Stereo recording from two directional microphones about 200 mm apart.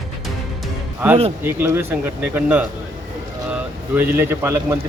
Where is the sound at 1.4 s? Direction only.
10° right (ahead or behind).